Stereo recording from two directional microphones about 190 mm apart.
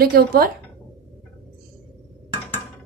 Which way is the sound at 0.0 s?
55° right (ahead or behind).